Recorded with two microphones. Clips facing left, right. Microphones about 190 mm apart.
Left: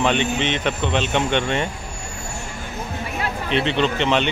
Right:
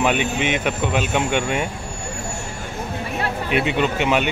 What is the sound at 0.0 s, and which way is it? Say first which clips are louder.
Speech: even; 10° right (ahead or behind).